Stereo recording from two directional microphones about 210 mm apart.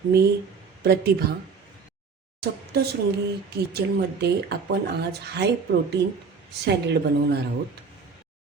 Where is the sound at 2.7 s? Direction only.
50° right (ahead or behind).